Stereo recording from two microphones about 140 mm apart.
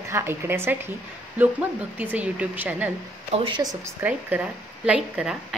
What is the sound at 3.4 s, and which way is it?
Speech, 30° right (ahead or behind).